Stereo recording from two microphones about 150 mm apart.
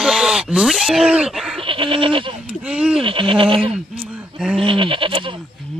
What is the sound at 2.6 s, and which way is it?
Speech, 5° right (ahead or behind).